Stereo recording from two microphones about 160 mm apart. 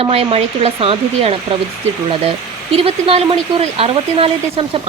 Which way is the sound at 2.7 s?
40° right (ahead or behind).